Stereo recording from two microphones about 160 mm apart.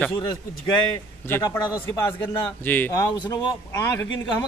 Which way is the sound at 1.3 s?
15° left (ahead or behind).